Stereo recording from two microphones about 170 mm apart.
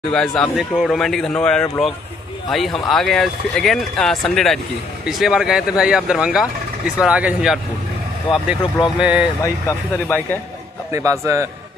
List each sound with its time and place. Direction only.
0.1 s speech: 5° left (ahead or behind)
9.0 s speech: 5° right (ahead or behind)
9.4 s speech: 15° left (ahead or behind)
10.9 s a man's voice: 20° right (ahead or behind)